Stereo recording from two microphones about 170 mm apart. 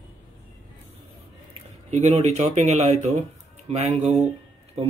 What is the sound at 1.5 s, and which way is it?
A man's voice, 40° right (ahead or behind).